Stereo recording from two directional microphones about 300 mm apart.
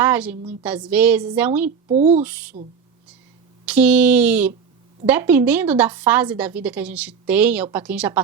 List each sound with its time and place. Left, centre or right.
0.0 s a woman's voice: centre
1.9 s a sound: right
2.2 s a woman's voice: centre
3.7 s a woman's voice: centre